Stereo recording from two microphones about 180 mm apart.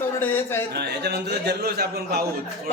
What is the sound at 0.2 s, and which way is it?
Speech, 10° left (ahead or behind).